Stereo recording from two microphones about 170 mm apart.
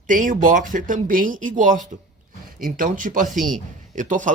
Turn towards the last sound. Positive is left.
turn(degrees=-50)  # may be behind; listen again after turning